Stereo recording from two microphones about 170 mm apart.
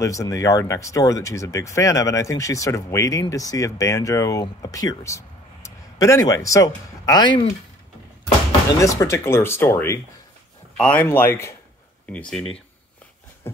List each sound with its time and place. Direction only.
0.0 s speech: 20° left (ahead or behind)
8.7 s speech: 20° left (ahead or behind)